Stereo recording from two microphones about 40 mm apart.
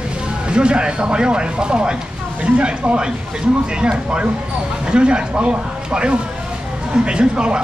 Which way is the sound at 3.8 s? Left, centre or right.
Right.